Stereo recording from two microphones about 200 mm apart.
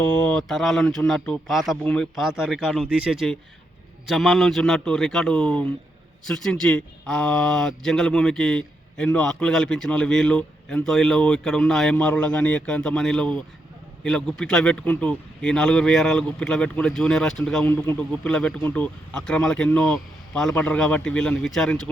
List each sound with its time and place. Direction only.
0.1 s speech: 5° left (ahead or behind)